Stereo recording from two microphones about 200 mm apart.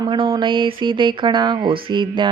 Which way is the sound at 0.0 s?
25° right (ahead or behind).